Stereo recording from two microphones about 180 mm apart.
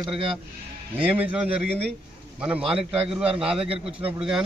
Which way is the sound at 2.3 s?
5° right (ahead or behind).